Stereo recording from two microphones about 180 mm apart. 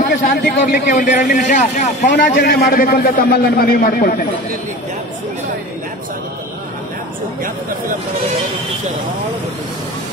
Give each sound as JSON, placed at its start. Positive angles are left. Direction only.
{"t": 0.1, "sound": "a man's voice", "side_deg": 50}
{"t": 2.0, "sound": "a man's voice", "side_deg": 70}